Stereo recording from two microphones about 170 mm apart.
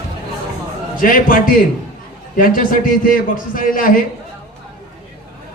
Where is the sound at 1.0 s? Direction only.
55° left (ahead or behind).